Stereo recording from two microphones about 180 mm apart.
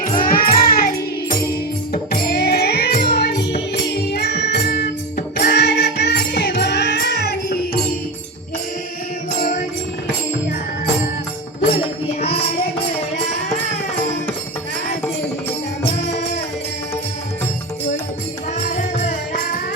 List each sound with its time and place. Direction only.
0.2 s music: 50° left (ahead or behind)
1.9 s music: 60° left (ahead or behind)
9.4 s music: 45° left (ahead or behind)
12.2 s music: 35° left (ahead or behind)
18.8 s music: 45° left (ahead or behind)